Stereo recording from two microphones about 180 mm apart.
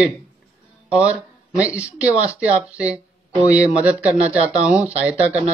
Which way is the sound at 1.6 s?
5° right (ahead or behind).